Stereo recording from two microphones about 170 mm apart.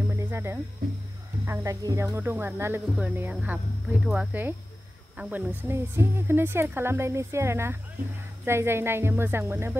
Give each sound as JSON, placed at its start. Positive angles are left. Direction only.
{"t": 0.1, "sound": "music", "side_deg": -15}
{"t": 1.4, "sound": "a woman's voice", "side_deg": -15}